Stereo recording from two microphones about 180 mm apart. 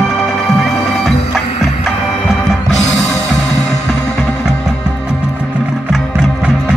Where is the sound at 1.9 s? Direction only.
Centre (ahead or behind).